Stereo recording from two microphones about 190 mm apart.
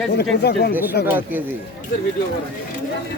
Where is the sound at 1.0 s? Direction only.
60° left (ahead or behind).